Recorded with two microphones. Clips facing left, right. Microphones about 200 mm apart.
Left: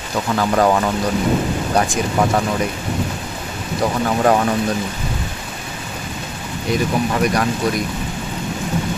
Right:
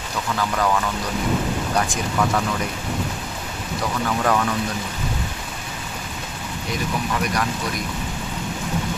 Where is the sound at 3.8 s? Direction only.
35° left (ahead or behind).